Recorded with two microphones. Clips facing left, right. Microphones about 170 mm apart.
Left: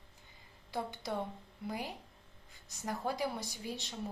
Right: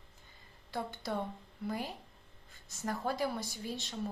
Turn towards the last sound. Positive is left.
turn(degrees=15)  # may be behind; listen again after turning